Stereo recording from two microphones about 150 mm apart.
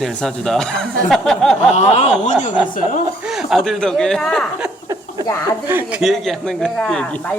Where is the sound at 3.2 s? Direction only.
5° right (ahead or behind).